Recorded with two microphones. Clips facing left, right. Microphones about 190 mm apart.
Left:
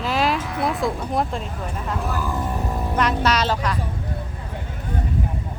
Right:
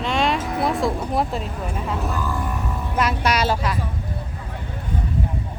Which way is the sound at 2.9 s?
10° right (ahead or behind).